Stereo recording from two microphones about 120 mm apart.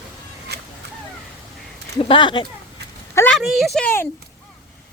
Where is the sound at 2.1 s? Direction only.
45° left (ahead or behind).